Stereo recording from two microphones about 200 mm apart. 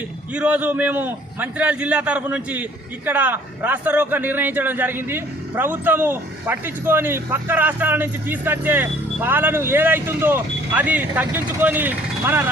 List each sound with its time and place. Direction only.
0.3 s a man's voice: 5° right (ahead or behind)